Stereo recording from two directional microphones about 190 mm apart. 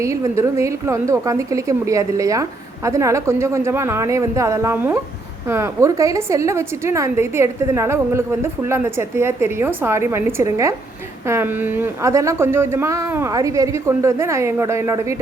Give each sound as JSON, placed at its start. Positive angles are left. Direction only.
{"t": 0.0, "sound": "a woman's voice", "side_deg": -15}